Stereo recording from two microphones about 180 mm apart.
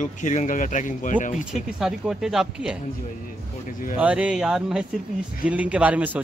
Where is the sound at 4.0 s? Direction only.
5° right (ahead or behind).